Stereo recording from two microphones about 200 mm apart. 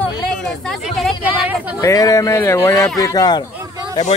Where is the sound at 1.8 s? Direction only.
15° left (ahead or behind).